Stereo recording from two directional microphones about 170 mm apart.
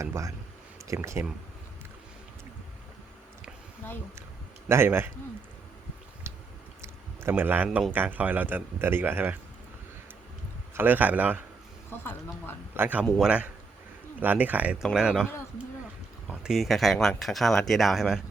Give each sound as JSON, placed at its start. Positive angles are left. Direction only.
{"t": 0.0, "sound": "speech", "side_deg": -20}
{"t": 4.7, "sound": "speech", "side_deg": -15}
{"t": 6.3, "sound": "squish", "side_deg": -15}
{"t": 6.8, "sound": "a sound", "side_deg": -15}
{"t": 7.9, "sound": "speech", "side_deg": -10}
{"t": 10.8, "sound": "speech", "side_deg": -10}
{"t": 11.9, "sound": "speech", "side_deg": 10}
{"t": 12.7, "sound": "speech", "side_deg": -10}